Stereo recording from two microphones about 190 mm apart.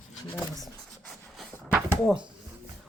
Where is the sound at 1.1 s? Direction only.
Centre (ahead or behind).